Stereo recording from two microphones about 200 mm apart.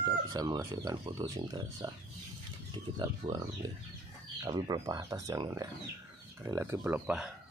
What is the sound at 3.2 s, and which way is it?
Speech, 35° right (ahead or behind).